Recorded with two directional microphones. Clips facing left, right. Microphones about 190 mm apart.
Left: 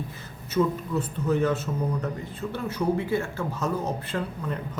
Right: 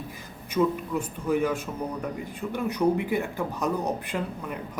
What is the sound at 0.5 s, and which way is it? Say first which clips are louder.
A woman's voice: even; 10° right (ahead or behind).